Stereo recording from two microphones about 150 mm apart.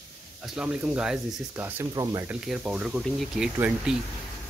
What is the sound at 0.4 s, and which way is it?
Speech, 5° right (ahead or behind).